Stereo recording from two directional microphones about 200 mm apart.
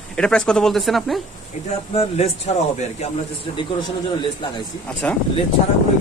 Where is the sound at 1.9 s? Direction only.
35° left (ahead or behind).